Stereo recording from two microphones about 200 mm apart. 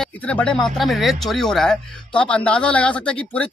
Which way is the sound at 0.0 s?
5° left (ahead or behind).